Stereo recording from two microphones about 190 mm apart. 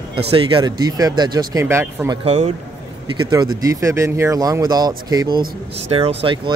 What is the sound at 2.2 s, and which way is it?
Speech, 30° right (ahead or behind).